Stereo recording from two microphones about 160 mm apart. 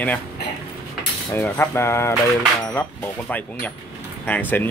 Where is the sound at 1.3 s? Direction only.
15° left (ahead or behind).